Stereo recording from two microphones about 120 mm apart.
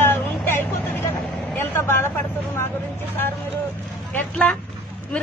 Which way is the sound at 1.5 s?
20° left (ahead or behind).